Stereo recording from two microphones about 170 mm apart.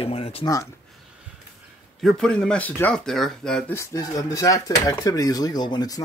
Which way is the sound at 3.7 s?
15° left (ahead or behind).